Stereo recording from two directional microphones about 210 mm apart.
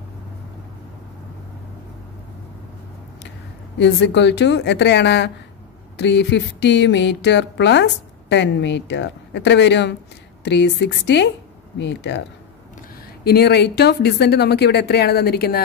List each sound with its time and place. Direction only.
3.7 s speech: 55° left (ahead or behind)
13.2 s speech: 50° left (ahead or behind)